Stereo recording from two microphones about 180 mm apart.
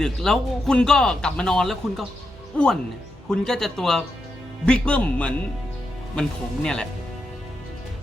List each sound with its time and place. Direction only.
0.0 s a man's voice: centre (ahead or behind)
3.2 s a man's voice: 5° left (ahead or behind)